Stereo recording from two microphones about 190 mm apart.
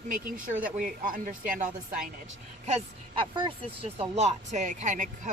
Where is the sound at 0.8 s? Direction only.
45° right (ahead or behind).